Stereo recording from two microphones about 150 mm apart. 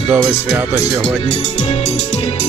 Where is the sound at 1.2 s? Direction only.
45° left (ahead or behind).